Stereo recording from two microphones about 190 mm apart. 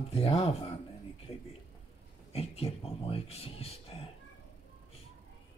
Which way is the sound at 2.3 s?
30° left (ahead or behind).